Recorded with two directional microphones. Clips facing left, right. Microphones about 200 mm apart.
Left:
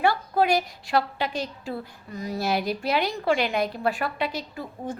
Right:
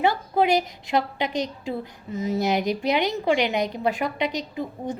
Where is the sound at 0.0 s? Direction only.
20° right (ahead or behind).